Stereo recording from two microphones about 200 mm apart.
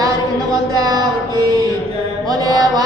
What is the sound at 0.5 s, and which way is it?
Music, 20° right (ahead or behind).